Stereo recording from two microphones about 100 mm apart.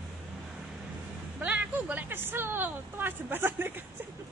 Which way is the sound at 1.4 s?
15° right (ahead or behind).